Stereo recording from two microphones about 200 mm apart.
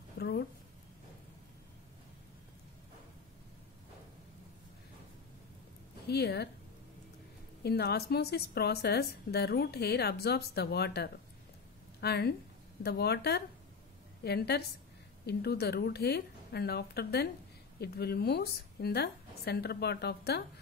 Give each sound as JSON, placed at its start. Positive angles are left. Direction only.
{"t": 0.2, "sound": "a sound", "side_deg": 55}
{"t": 6.0, "sound": "speech", "side_deg": 55}
{"t": 7.6, "sound": "a woman's voice", "side_deg": 55}